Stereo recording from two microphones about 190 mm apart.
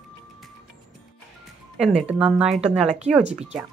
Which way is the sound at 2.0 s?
5° right (ahead or behind).